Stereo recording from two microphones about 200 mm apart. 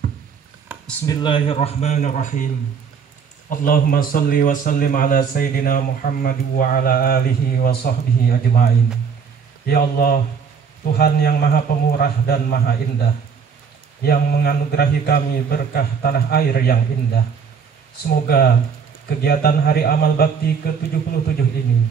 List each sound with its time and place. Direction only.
1.0 s speech: 20° left (ahead or behind); by 2.4 s 40° left (ahead or behind)
3.4 s speech: 45° left (ahead or behind)
18.2 s speech: 50° left (ahead or behind)